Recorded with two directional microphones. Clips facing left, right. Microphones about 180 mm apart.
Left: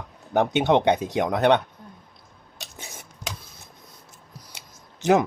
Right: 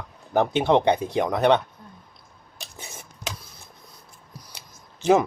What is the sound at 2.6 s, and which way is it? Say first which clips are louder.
Dishes: even; 20° left (ahead or behind).